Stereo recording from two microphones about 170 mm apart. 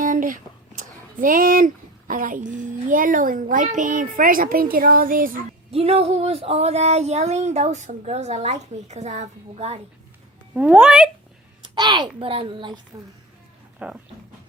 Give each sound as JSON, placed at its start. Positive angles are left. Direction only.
{"t": 0.0, "sound": "a sound", "side_deg": -50}
{"t": 0.8, "sound": "a woman's voice", "side_deg": -55}
{"t": 5.7, "sound": "speech", "side_deg": -35}
{"t": 10.5, "sound": "speech", "side_deg": -10}
{"t": 11.6, "sound": "a child's voice", "side_deg": -25}
{"t": 13.7, "sound": "speech", "side_deg": -5}